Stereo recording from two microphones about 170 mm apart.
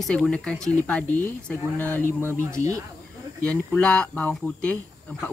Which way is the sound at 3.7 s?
5° left (ahead or behind).